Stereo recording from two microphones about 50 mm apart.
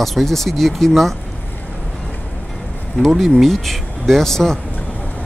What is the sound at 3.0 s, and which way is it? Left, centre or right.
Speech, centre.